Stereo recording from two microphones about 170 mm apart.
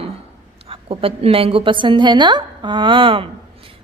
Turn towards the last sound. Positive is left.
turn(degrees=-30)  # may be behind; listen again after turning